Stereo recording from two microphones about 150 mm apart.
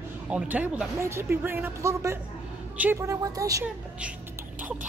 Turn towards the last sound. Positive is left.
turn(degrees=-10)  # may be behind; listen again after turning